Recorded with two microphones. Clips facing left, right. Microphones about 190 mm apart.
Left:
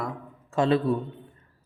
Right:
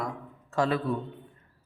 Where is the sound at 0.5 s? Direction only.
25° left (ahead or behind).